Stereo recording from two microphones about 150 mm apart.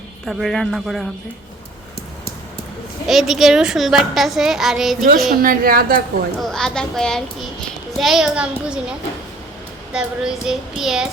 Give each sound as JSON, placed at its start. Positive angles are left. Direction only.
{"t": 0.3, "sound": "a child's voice", "side_deg": 0}
{"t": 3.1, "sound": "a child's voice", "side_deg": 0}
{"t": 5.3, "sound": "a woman's voice", "side_deg": -70}
{"t": 6.4, "sound": "a child's voice", "side_deg": 5}